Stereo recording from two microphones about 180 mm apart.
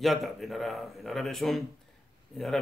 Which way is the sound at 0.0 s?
Centre (ahead or behind).